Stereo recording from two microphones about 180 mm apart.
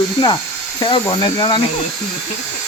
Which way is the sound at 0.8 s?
25° left (ahead or behind).